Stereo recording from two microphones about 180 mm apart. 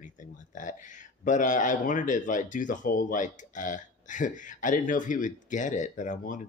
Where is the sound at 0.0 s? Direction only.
45° left (ahead or behind).